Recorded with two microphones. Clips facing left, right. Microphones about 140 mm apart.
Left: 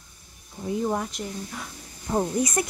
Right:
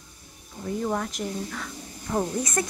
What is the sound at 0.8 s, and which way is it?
Speech, 15° left (ahead or behind).